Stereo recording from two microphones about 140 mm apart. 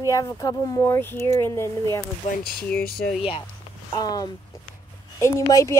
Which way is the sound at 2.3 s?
60° left (ahead or behind).